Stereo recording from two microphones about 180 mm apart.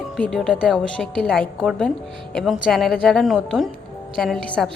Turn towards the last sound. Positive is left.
turn(degrees=0)  # may be behind; listen again after turning